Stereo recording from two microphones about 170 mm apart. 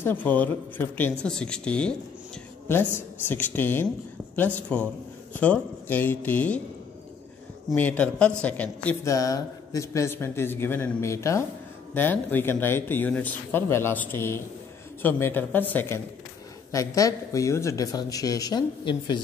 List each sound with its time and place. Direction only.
0.0 s a man's voice: 10° left (ahead or behind)
7.7 s a man's voice: 10° left (ahead or behind)
9.1 s a man's voice: 20° left (ahead or behind)